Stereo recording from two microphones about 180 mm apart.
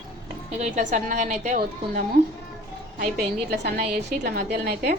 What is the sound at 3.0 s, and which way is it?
A woman's voice, 60° right (ahead or behind).